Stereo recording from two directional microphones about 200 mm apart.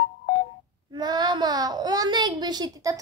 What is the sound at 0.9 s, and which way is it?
A child's voice, 20° right (ahead or behind).